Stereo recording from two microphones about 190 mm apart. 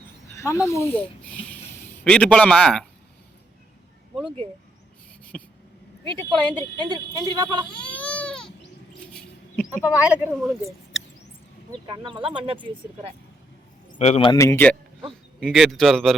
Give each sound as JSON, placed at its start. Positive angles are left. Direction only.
{"t": 0.3, "sound": "speech", "side_deg": 15}
{"t": 5.3, "sound": "a sound", "side_deg": 5}
{"t": 6.1, "sound": "speech", "side_deg": -25}
{"t": 7.7, "sound": "baby cry", "side_deg": 5}
{"t": 9.7, "sound": "speech", "side_deg": -5}
{"t": 11.9, "sound": "speech", "side_deg": -25}
{"t": 14.0, "sound": "a man's voice", "side_deg": 30}
{"t": 14.3, "sound": "a man's voice", "side_deg": 15}